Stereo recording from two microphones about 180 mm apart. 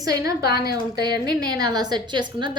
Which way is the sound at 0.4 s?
60° left (ahead or behind).